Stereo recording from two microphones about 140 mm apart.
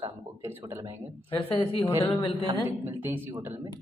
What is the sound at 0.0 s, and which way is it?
Speech, 15° right (ahead or behind).